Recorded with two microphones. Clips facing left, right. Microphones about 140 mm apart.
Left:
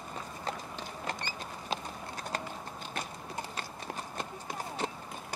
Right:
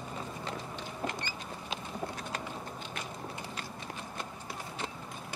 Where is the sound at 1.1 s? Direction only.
35° left (ahead or behind).